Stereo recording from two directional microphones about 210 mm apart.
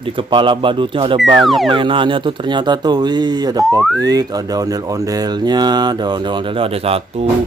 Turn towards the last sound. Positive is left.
turn(degrees=-30)  # may be behind; listen again after turning